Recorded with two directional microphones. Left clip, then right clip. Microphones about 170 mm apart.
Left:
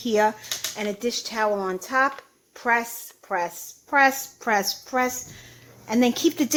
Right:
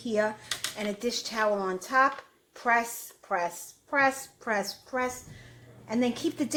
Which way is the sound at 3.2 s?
45° left (ahead or behind).